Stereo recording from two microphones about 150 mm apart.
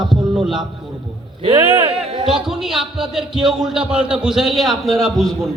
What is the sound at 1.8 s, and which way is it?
Speech, 35° right (ahead or behind).